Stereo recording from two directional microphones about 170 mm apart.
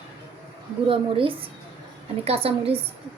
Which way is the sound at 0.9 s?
30° right (ahead or behind).